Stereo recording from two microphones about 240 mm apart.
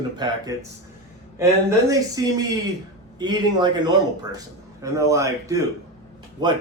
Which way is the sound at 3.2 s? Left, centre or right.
Centre.